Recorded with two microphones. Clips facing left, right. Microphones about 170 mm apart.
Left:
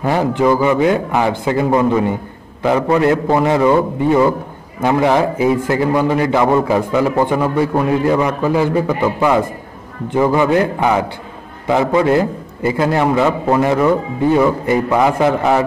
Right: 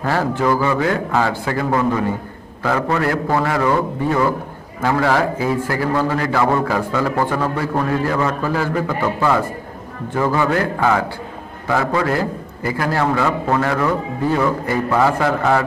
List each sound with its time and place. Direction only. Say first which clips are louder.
0.0 s a man's voice: left 4 dB; 15° left (ahead or behind)